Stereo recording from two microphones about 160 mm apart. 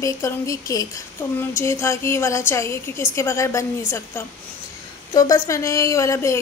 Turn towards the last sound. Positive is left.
turn(degrees=20)  # may be behind; listen again after turning